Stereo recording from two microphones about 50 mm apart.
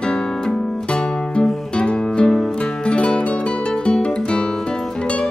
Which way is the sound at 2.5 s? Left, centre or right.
Left.